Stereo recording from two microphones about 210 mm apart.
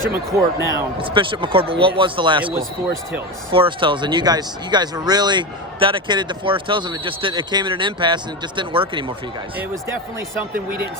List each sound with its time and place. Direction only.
0.1 s speech: 10° right (ahead or behind)
0.9 s speech: 25° right (ahead or behind)
3.5 s speech: 25° right (ahead or behind)
9.6 s speech: 10° right (ahead or behind)